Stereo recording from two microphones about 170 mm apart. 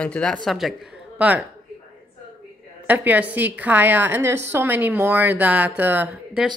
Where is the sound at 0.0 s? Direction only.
5° left (ahead or behind).